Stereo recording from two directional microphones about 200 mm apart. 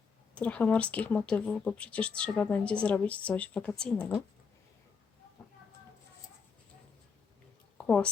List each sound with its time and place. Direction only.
0.3 s speech: 5° left (ahead or behind)
7.9 s speech: 5° left (ahead or behind)